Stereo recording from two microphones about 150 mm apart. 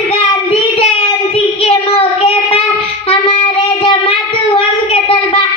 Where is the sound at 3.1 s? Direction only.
35° left (ahead or behind).